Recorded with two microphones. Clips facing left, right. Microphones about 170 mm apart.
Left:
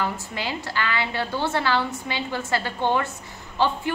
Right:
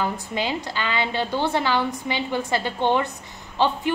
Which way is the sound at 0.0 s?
20° right (ahead or behind).